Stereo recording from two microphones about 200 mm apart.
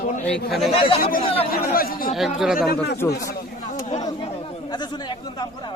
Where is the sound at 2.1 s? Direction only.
Centre (ahead or behind).